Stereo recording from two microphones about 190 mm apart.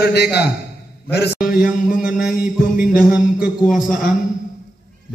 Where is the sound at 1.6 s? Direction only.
5° right (ahead or behind).